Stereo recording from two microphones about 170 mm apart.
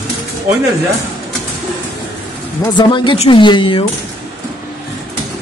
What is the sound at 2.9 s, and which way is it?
Speech, 30° left (ahead or behind).